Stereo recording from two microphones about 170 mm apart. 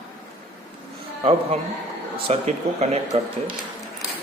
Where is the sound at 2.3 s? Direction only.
40° right (ahead or behind).